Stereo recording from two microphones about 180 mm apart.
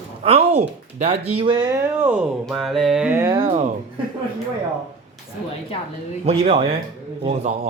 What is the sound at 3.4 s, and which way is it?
Speech, 40° right (ahead or behind).